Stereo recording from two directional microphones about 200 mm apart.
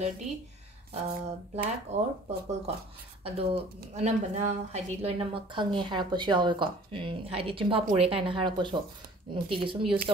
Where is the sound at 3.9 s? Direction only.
35° right (ahead or behind).